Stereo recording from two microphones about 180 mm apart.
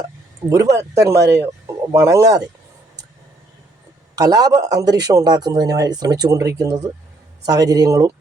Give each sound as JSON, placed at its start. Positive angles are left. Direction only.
{"t": 0.5, "sound": "speech", "side_deg": -15}
{"t": 4.1, "sound": "a man's voice", "side_deg": -20}